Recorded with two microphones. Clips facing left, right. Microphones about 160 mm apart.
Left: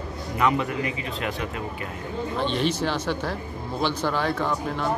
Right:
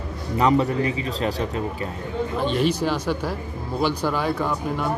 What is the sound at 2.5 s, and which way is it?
Speech, 10° right (ahead or behind).